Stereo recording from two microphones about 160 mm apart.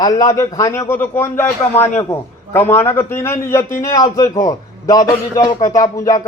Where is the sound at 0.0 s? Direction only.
20° left (ahead or behind).